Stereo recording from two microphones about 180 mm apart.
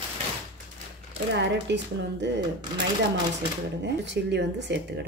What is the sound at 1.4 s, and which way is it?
Speech, 75° right (ahead or behind).